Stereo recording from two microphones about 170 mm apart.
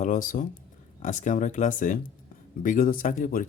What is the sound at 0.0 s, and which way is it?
Speech, 50° left (ahead or behind).